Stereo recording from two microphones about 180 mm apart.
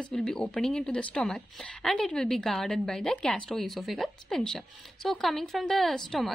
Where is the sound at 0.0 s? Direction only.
5° left (ahead or behind).